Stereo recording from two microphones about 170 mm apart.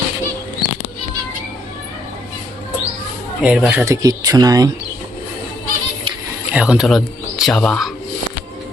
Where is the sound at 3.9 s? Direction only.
20° right (ahead or behind).